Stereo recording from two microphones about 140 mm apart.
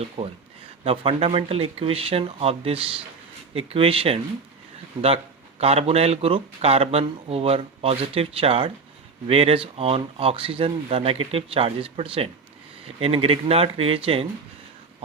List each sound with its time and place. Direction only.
0.2 s speech: 40° right (ahead or behind)